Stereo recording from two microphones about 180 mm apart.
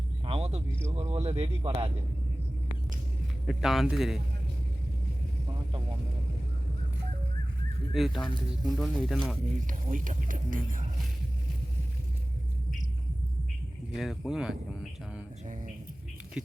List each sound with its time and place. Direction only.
0.3 s a sound: 35° right (ahead or behind)
0.9 s speech: 35° right (ahead or behind)
3.4 s speech: centre (ahead or behind)
7.9 s speech: centre (ahead or behind)
9.6 s speech: 50° right (ahead or behind)
13.9 s speech: centre (ahead or behind)
15.4 s speech: 45° right (ahead or behind)